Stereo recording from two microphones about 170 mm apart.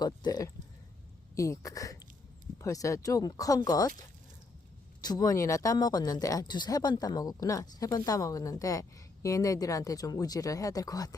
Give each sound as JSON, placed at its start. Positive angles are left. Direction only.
{"t": 0.0, "sound": "speech", "side_deg": 25}
{"t": 5.0, "sound": "speech", "side_deg": 20}